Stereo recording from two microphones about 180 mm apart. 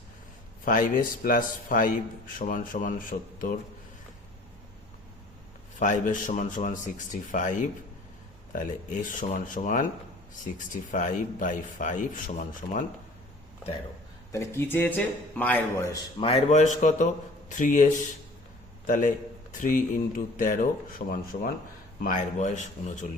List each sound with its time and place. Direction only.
0.6 s a man's voice: 50° left (ahead or behind)
5.8 s a man's voice: 45° left (ahead or behind)
8.5 s a man's voice: 50° left (ahead or behind)
10.9 s a man's voice: 45° left (ahead or behind)
14.3 s a man's voice: 15° left (ahead or behind)
16.2 s a man's voice: 35° left (ahead or behind)